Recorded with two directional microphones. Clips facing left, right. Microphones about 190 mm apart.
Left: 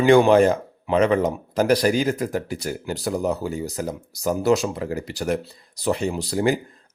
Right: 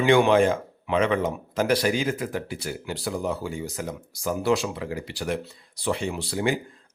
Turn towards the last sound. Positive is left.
turn(degrees=40)  # may be behind; listen again after turning